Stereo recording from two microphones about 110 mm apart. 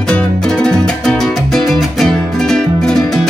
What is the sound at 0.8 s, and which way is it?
Music, 5° left (ahead or behind).